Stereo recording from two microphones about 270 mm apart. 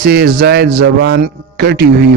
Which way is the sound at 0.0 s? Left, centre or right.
Right.